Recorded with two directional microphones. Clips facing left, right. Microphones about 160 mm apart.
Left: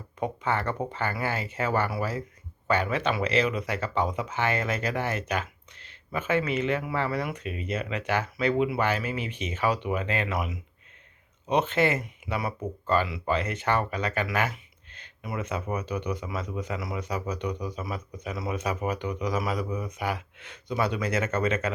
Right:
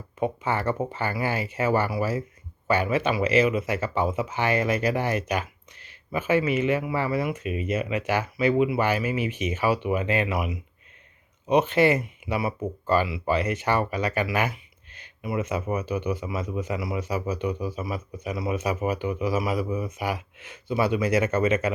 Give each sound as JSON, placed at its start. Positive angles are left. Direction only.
{"t": 0.2, "sound": "speech", "side_deg": -10}
{"t": 10.3, "sound": "speech", "side_deg": 0}
{"t": 11.4, "sound": "speech", "side_deg": -10}